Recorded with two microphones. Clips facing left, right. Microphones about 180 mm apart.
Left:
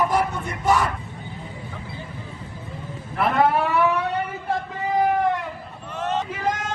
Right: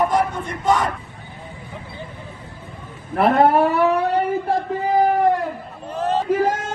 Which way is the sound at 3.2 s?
55° right (ahead or behind).